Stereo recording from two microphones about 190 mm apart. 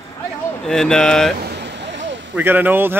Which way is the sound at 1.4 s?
65° right (ahead or behind).